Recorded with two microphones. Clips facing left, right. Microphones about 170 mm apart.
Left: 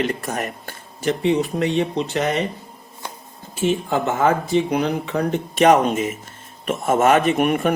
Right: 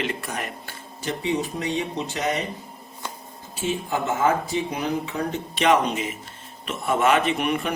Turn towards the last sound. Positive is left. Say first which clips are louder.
# left 6 dB
turn(degrees=50)  # may be behind; listen again after turning